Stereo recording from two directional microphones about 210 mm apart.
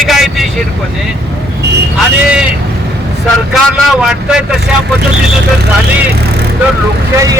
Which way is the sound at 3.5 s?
Centre (ahead or behind).